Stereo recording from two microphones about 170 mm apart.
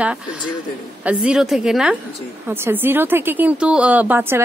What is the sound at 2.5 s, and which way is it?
A woman's voice, 15° right (ahead or behind).